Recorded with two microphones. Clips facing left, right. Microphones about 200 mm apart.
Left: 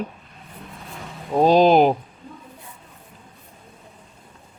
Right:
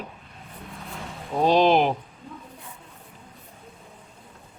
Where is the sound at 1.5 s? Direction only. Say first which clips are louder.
Left 4 dB; 40° left (ahead or behind).